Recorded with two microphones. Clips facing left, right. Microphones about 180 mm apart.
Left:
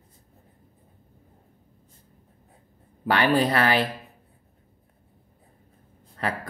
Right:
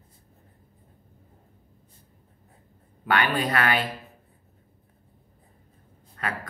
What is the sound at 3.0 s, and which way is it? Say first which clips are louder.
Speech: left 4 dB; 35° left (ahead or behind).